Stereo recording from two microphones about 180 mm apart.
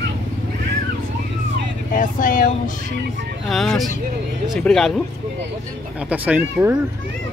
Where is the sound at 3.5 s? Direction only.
Centre (ahead or behind).